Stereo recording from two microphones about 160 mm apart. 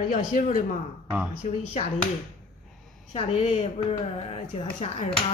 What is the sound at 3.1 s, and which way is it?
Speech, 40° left (ahead or behind).